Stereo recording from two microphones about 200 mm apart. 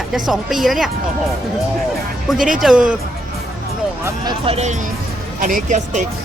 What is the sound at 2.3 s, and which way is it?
Speech, centre (ahead or behind).